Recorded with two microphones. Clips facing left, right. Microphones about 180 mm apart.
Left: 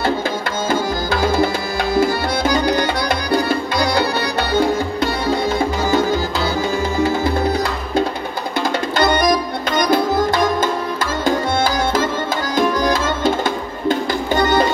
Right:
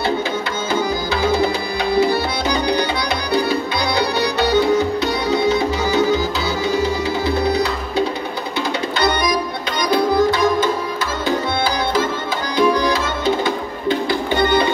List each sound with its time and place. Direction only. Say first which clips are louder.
0.7 s tabla: left 1 dB; 50° left (ahead or behind)
2.0 s music: even; 50° left (ahead or behind)
8.9 s tabla: left 3 dB; 50° left (ahead or behind)
9.8 s sitar: even; 45° left (ahead or behind)
12.5 s music: right 1 dB; 45° left (ahead or behind)